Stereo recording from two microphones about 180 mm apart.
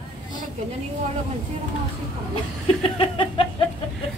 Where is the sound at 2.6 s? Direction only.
30° left (ahead or behind).